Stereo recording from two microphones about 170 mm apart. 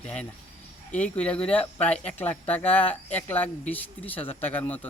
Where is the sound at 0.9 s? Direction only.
10° left (ahead or behind).